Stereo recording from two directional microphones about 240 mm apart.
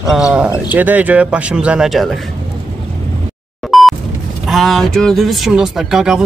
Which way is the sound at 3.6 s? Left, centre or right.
Centre.